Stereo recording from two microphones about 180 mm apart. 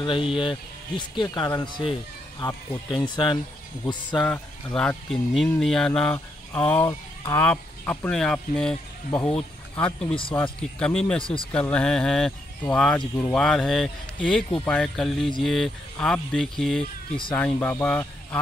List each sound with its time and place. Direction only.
0.0 s speech: 25° left (ahead or behind)
4.2 s speech: 10° left (ahead or behind)
6.8 s speech: 25° left (ahead or behind)
7.3 s speech: 10° left (ahead or behind)
10.3 s speech: 10° left (ahead or behind)
11.1 s speech: 30° left (ahead or behind)
11.5 s speech: 5° left (ahead or behind)